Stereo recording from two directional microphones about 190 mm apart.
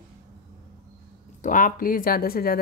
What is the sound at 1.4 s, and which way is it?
A woman's voice, 45° left (ahead or behind).